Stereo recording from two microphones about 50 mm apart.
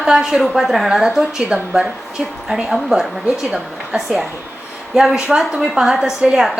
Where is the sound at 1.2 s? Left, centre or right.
Centre.